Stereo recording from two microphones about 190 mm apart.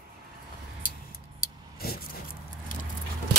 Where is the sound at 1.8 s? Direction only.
55° left (ahead or behind).